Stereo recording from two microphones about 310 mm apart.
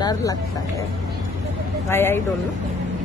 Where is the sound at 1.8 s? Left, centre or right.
Centre.